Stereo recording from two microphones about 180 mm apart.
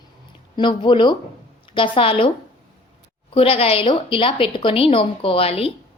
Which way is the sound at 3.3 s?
30° left (ahead or behind).